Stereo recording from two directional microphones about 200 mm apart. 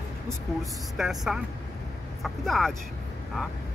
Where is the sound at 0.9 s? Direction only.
Centre (ahead or behind).